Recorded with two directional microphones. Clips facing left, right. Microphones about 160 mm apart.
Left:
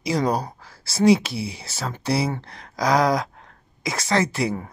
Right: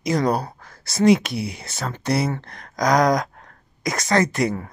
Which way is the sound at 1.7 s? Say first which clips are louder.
Right 1 dB; 5° left (ahead or behind).